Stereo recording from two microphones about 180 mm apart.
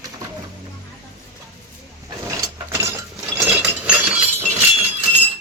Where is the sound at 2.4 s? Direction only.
15° right (ahead or behind).